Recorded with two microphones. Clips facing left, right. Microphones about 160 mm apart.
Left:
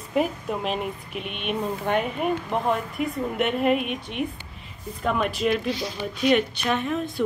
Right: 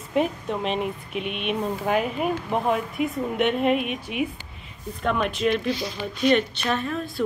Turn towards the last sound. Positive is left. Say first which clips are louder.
# left 1 dB
turn(degrees=20)  # may be behind; listen again after turning